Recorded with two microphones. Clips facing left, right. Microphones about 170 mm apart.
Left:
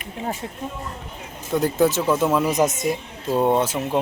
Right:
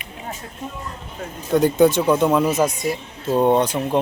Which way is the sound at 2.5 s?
20° left (ahead or behind).